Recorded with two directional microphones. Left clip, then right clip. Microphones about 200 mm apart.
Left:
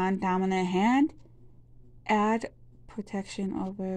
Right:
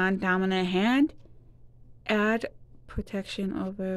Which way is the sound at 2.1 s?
30° right (ahead or behind).